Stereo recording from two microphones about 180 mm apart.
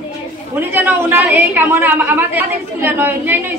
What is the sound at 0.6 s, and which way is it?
A woman's voice, 10° right (ahead or behind).